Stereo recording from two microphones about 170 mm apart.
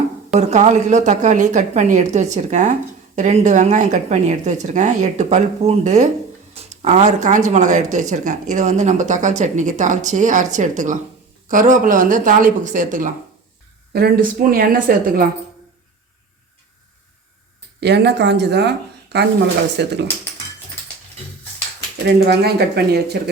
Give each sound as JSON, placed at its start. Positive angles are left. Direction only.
{"t": 0.3, "sound": "speech", "side_deg": -45}
{"t": 13.9, "sound": "a woman's voice", "side_deg": -60}
{"t": 17.7, "sound": "speech", "side_deg": -80}
{"t": 22.0, "sound": "speech", "side_deg": -70}